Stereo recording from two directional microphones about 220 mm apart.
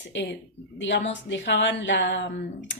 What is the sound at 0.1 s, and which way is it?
Speech, 55° left (ahead or behind).